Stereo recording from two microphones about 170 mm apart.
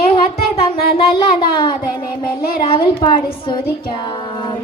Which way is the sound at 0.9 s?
30° left (ahead or behind).